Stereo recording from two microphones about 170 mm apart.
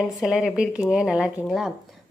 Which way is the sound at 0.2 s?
Centre (ahead or behind).